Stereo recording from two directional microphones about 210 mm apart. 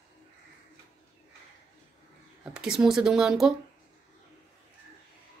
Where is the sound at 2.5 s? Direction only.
5° right (ahead or behind).